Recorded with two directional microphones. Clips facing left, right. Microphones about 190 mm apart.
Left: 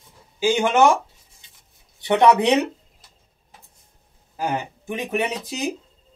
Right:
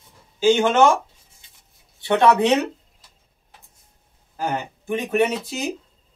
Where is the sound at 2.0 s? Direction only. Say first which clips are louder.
Left 1 dB; 15° left (ahead or behind).